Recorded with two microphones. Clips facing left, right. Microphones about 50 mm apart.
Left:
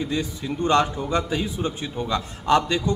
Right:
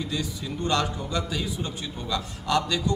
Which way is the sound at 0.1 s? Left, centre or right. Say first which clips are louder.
Left 4 dB; left.